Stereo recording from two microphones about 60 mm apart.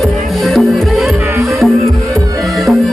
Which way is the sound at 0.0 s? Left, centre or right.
Centre.